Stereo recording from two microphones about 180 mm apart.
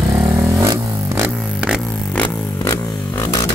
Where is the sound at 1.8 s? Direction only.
5° left (ahead or behind).